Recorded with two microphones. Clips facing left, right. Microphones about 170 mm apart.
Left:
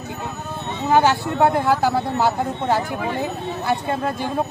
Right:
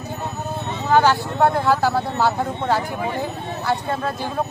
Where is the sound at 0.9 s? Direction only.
10° left (ahead or behind).